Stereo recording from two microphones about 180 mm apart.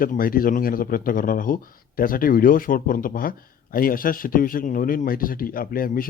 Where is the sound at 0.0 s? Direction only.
50° left (ahead or behind).